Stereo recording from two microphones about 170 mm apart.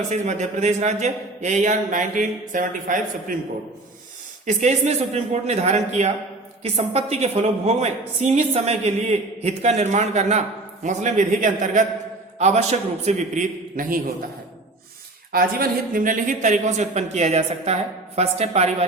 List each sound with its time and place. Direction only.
0.1 s a man's voice: 45° right (ahead or behind)
4.4 s a man's voice: 40° right (ahead or behind)
15.3 s a man's voice: 60° right (ahead or behind); by 18.9 s 40° right (ahead or behind)